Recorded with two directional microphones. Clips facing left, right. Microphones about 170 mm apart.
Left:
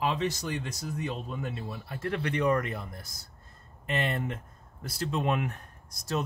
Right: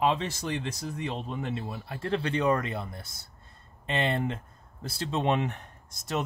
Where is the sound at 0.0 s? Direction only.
25° right (ahead or behind).